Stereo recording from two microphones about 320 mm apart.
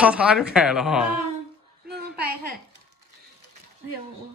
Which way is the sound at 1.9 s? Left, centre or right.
Right.